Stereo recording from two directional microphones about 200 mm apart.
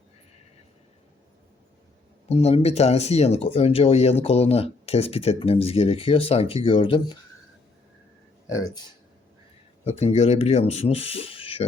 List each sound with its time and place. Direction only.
2.3 s speech: 30° left (ahead or behind)
8.4 s speech: 15° left (ahead or behind)
9.8 s speech: 30° left (ahead or behind)